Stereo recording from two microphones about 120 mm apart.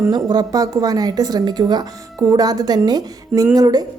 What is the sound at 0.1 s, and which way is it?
Speech, 35° right (ahead or behind).